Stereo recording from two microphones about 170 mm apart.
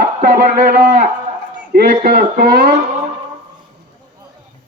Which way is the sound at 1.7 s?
70° right (ahead or behind).